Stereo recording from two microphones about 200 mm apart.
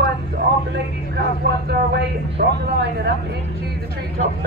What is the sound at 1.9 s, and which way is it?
Speech, 55° right (ahead or behind).